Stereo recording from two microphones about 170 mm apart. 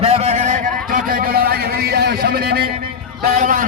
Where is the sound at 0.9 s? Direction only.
55° right (ahead or behind).